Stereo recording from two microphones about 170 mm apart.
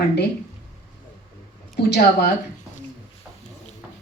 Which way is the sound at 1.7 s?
75° left (ahead or behind).